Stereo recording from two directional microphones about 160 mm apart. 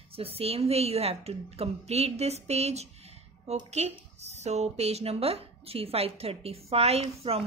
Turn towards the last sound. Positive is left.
turn(degrees=-40)  # may be behind; listen again after turning